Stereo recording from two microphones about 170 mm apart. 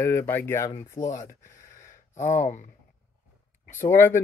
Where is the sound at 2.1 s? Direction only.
45° left (ahead or behind).